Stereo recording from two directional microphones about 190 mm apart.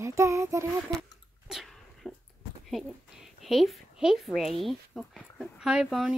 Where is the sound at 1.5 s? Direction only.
Centre (ahead or behind).